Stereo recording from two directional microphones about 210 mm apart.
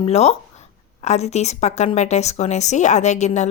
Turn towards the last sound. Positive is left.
turn(degrees=35)  # may be behind; listen again after turning